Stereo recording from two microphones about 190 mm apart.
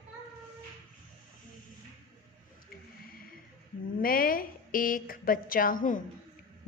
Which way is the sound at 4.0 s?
50° left (ahead or behind).